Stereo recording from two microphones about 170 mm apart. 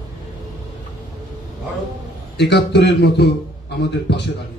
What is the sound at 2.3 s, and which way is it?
A man's voice, 80° left.